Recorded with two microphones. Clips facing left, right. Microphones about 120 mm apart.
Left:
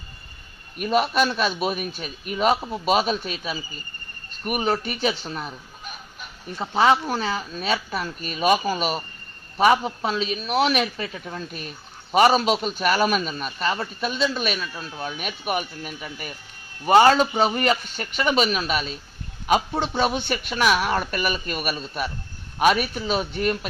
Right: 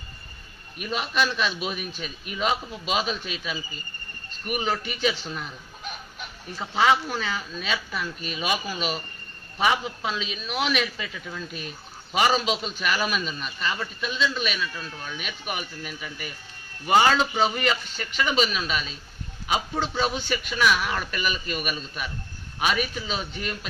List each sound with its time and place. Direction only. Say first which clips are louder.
0.8 s a man's voice: left 6 dB; 50° left (ahead or behind)
6.6 s a man's voice: left 3 dB; 40° left (ahead or behind)